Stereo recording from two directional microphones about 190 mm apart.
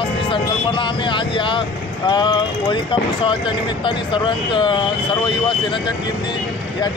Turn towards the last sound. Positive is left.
turn(degrees=25)  # may be behind; listen again after turning